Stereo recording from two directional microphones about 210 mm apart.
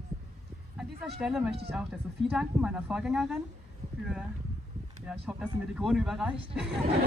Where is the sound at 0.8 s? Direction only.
Centre (ahead or behind).